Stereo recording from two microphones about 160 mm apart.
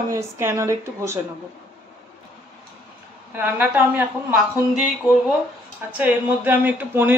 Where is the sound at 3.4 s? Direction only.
10° right (ahead or behind).